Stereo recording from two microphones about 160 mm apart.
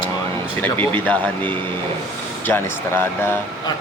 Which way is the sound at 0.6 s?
10° left (ahead or behind).